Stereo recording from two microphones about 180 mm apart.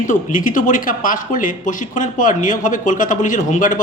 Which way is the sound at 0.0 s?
45° left (ahead or behind).